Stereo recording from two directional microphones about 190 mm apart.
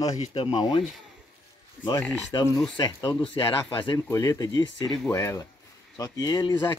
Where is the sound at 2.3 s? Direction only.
20° left (ahead or behind).